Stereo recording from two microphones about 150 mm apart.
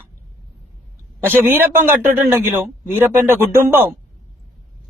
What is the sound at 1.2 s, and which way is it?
A man's voice, 15° right (ahead or behind).